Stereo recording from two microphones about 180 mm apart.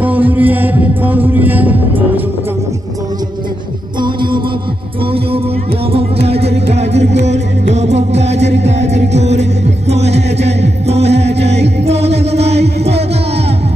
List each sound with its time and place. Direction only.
0.0 s music: 10° right (ahead or behind)
4.0 s music: 25° right (ahead or behind)
5.9 s music: 35° right (ahead or behind)